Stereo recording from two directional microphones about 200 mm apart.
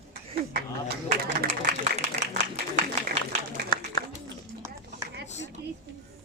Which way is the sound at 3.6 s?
55° right (ahead or behind).